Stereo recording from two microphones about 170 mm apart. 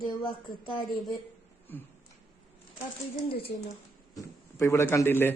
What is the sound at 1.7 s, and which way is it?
Speech, 10° left (ahead or behind).